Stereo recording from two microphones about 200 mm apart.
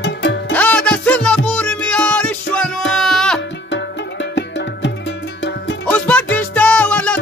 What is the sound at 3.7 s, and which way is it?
Music, 60° left (ahead or behind).